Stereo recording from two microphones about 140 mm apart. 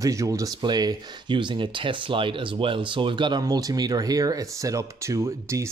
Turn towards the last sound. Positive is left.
turn(degrees=-20)  # may be behind; listen again after turning